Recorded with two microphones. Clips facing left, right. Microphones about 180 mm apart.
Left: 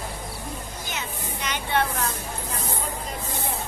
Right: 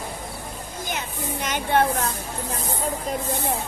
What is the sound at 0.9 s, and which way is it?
Music, 50° right (ahead or behind).